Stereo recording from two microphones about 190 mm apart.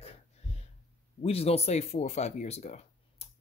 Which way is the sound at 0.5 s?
35° left (ahead or behind).